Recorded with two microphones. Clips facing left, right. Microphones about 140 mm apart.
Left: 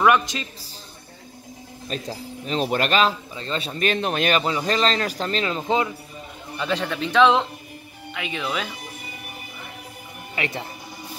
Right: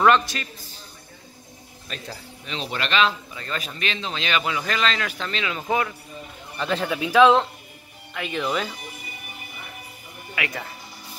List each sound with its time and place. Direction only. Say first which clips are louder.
0.0 s a man's voice: even; 15° left (ahead or behind)
1.9 s a man's voice: left 6 dB; 35° left (ahead or behind)
3.3 s a man's voice: left 4 dB; 30° left (ahead or behind)
3.8 s speech: left 10 dB; 55° left (ahead or behind)
4.4 s a man's voice: left 3 dB; 35° left (ahead or behind)
5.6 s a man's voice: even; 20° left (ahead or behind)
6.6 s a man's voice: even; 5° right (ahead or behind)
10.3 s a man's voice: left 2 dB; 30° left (ahead or behind)